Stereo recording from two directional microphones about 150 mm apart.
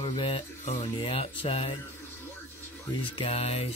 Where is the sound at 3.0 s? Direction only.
40° left (ahead or behind).